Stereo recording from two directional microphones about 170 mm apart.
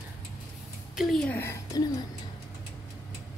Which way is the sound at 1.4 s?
20° left (ahead or behind).